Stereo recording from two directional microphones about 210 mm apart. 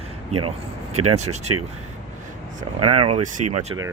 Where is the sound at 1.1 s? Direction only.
30° right (ahead or behind).